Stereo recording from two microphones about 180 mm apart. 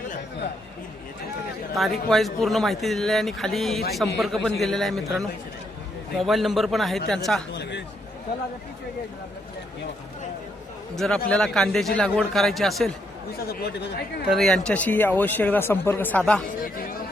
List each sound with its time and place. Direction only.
1.7 s speech: centre (ahead or behind)
6.1 s speech: centre (ahead or behind)
7.5 s a sound: 70° left (ahead or behind)
10.9 s speech: centre (ahead or behind)
13.5 s speech: 60° left (ahead or behind)
14.3 s a man's voice: centre (ahead or behind)
16.6 s speech: 55° left (ahead or behind)